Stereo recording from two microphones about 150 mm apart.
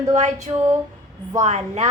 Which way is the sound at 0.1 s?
50° right (ahead or behind).